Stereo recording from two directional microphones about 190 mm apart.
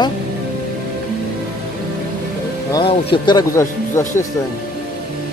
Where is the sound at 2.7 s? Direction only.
20° left (ahead or behind).